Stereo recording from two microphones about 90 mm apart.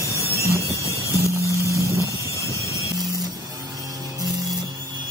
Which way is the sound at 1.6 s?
35° right (ahead or behind).